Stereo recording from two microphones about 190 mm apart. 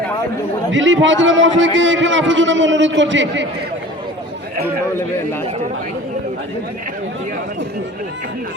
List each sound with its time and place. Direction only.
0.7 s a man's voice: 75° right (ahead or behind)